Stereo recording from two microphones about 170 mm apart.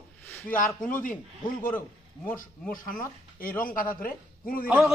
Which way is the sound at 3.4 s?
55° left (ahead or behind).